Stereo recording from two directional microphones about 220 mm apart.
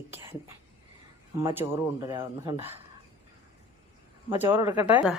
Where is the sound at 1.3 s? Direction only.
15° right (ahead or behind).